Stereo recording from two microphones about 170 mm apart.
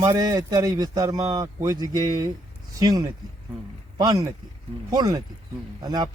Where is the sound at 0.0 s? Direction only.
20° right (ahead or behind).